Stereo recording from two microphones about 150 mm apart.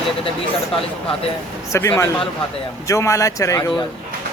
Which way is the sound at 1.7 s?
20° left (ahead or behind).